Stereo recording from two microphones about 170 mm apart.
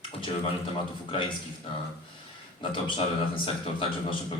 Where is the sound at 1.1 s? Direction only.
30° left (ahead or behind).